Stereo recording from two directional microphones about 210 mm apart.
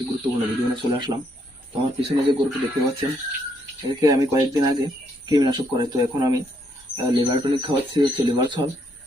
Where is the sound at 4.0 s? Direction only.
15° right (ahead or behind).